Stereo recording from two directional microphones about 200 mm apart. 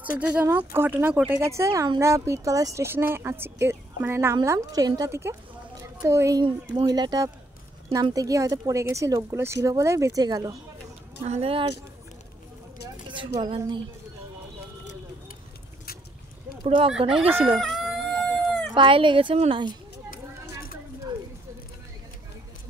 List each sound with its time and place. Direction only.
0.2 s speech: 5° right (ahead or behind)
5.8 s a sound: 15° right (ahead or behind)
6.9 s speech: 20° right (ahead or behind)
11.2 s a woman's voice: 30° right (ahead or behind)
13.1 s a woman's voice: 25° right (ahead or behind)
16.6 s a woman's voice: 30° right (ahead or behind)
17.6 s a sound: centre (ahead or behind)
18.8 s a woman's voice: 25° right (ahead or behind)